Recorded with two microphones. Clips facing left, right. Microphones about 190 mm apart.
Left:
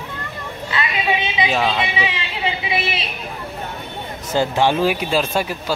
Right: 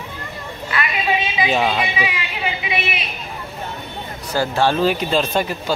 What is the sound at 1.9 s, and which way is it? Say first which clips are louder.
Speech: even; 25° left (ahead or behind).